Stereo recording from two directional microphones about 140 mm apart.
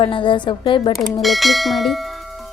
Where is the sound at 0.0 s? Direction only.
35° left (ahead or behind).